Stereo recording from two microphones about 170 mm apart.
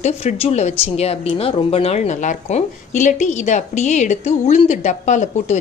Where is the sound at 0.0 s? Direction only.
40° left (ahead or behind).